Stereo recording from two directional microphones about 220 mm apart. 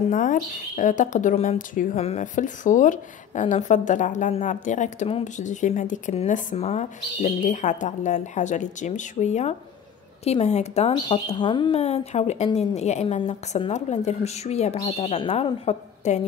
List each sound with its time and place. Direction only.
0.1 s speech: 35° left (ahead or behind)